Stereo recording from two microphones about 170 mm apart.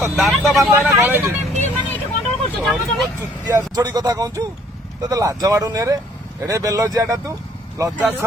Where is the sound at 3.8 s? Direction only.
25° right (ahead or behind).